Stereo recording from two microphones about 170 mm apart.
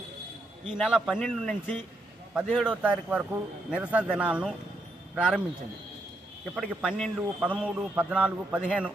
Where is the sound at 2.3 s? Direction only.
5° right (ahead or behind).